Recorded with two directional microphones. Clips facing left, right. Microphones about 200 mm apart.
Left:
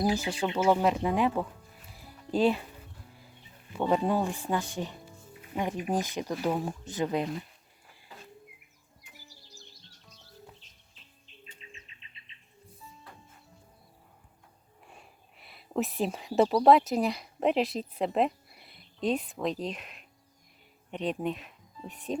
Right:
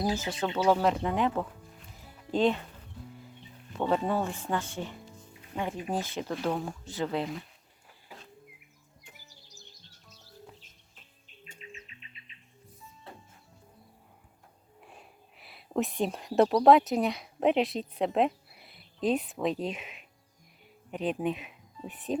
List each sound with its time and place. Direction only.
0.0 s speech: 15° left (ahead or behind)
2.0 s music: 10° left (ahead or behind)
3.8 s speech: 15° left (ahead or behind)
6.7 s speech: 20° left (ahead or behind)
13.1 s music: 25° right (ahead or behind)
14.8 s speech: centre (ahead or behind)